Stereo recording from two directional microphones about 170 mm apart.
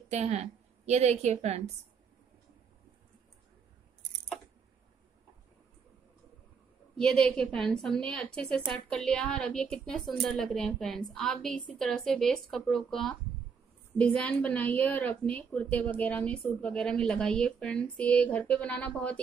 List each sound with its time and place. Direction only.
0.1 s a woman's voice: 40° right (ahead or behind)
7.0 s a woman's voice: 5° left (ahead or behind)